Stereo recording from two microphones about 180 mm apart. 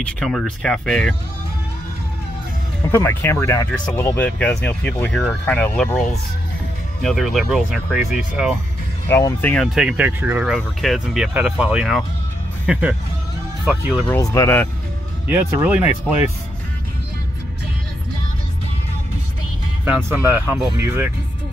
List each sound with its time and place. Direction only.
0.0 s speech: centre (ahead or behind)
2.9 s speech: 15° left (ahead or behind)
9.0 s speech: 15° left (ahead or behind); by 12.0 s 5° right (ahead or behind)
13.7 s speech: 10° right (ahead or behind)
14.0 s speech: 20° left (ahead or behind)
15.2 s speech: 10° right (ahead or behind)
19.8 s speech: 10° right (ahead or behind)